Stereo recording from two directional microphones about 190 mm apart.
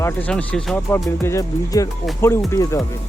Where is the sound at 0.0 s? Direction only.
10° left (ahead or behind).